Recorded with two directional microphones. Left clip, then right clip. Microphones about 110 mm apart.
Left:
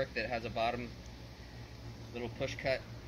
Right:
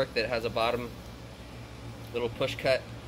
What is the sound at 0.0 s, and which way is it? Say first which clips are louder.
Speech: right 7 dB; 30° right (ahead or behind).